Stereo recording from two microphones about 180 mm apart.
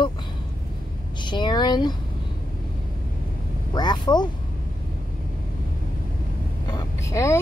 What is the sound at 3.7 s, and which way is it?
Speech, 25° left (ahead or behind).